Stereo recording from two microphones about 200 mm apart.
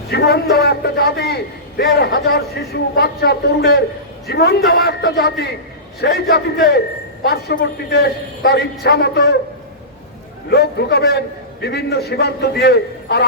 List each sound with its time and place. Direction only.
0.1 s a man's voice: 55° left (ahead or behind)
10.5 s a man's voice: 55° left (ahead or behind)